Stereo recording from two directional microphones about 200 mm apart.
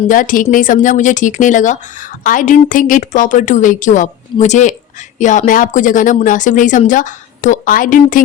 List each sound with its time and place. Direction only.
0.1 s a woman's voice: 40° left (ahead or behind)